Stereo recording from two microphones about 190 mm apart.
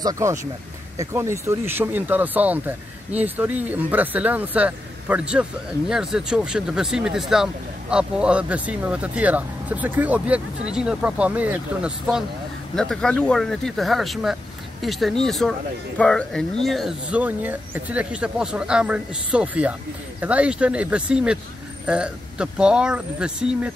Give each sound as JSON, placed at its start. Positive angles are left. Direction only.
{"t": 0.0, "sound": "speech", "side_deg": -15}